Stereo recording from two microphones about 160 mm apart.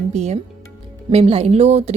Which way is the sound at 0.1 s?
45° right (ahead or behind).